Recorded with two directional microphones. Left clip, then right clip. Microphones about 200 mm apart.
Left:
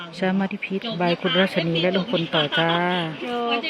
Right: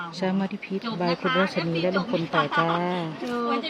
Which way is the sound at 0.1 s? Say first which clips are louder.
Left 7 dB; centre (ahead or behind).